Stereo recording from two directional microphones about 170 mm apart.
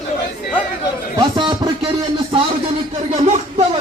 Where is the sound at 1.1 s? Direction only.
30° right (ahead or behind).